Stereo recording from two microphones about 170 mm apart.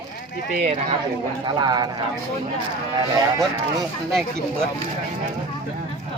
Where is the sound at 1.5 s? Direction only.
25° right (ahead or behind).